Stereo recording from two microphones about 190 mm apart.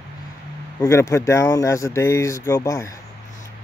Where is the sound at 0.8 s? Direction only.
15° left (ahead or behind).